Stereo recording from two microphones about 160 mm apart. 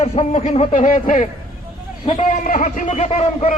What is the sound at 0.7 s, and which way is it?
Speech, 55° left (ahead or behind).